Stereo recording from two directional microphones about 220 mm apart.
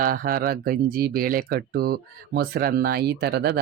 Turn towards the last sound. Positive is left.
turn(degrees=-45)  # may be behind; listen again after turning